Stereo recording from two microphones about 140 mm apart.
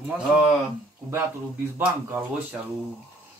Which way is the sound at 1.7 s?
10° right (ahead or behind).